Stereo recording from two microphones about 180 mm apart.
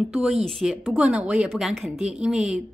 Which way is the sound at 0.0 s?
Centre (ahead or behind).